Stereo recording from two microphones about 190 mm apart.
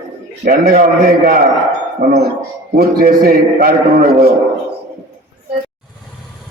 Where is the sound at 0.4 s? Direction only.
50° right (ahead or behind).